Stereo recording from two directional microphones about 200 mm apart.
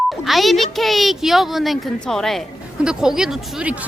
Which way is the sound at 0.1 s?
Centre (ahead or behind).